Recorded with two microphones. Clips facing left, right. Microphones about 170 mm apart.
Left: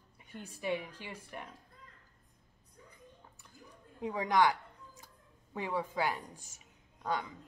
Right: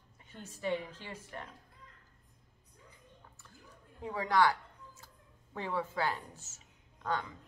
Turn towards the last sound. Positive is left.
turn(degrees=15)  # may be behind; listen again after turning